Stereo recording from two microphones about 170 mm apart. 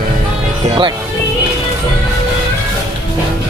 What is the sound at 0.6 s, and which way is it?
Speech, 30° right (ahead or behind).